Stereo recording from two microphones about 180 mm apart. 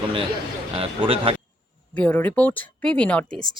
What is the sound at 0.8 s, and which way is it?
Speech, 30° right (ahead or behind).